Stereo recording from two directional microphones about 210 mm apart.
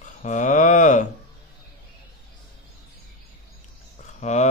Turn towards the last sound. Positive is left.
turn(degrees=35)  # may be behind; listen again after turning